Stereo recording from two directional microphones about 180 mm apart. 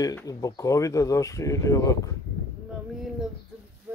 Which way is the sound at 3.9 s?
10° right (ahead or behind).